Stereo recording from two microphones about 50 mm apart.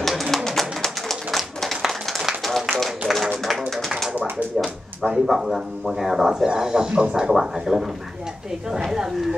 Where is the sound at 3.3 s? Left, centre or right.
Centre.